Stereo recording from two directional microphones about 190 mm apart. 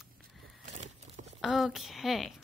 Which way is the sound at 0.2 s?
40° right (ahead or behind).